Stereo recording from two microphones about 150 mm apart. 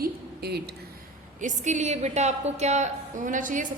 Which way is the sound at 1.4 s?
55° right (ahead or behind).